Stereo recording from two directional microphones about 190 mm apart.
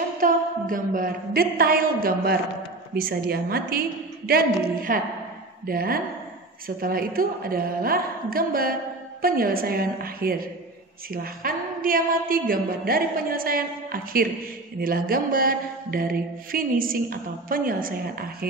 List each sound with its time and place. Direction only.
0.2 s mantra: 45° right (ahead or behind)
4.9 s mantra: 45° right (ahead or behind)